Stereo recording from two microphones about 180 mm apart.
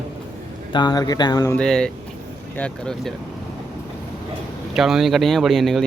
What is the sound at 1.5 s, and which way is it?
Speech, 5° left (ahead or behind).